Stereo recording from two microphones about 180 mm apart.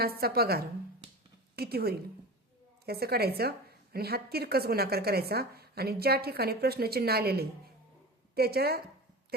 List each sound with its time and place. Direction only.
0.0 s a woman's voice: 60° right (ahead or behind)